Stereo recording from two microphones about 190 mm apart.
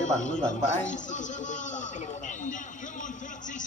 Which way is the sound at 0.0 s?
40° left (ahead or behind).